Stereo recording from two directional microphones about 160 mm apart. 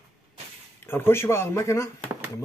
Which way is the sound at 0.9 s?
15° left (ahead or behind).